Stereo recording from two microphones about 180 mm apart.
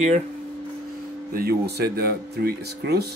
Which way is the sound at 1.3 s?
55° right (ahead or behind).